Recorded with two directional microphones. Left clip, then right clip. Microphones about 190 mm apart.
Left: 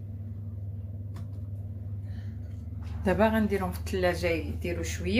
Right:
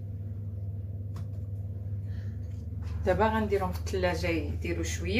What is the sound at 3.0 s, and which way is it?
Speech, 55° left (ahead or behind).